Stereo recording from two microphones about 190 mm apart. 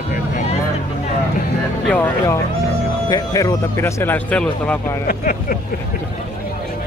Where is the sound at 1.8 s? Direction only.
10° left (ahead or behind).